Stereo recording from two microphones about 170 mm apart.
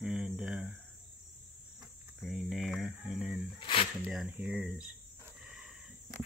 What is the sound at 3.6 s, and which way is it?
Speech, 30° left (ahead or behind).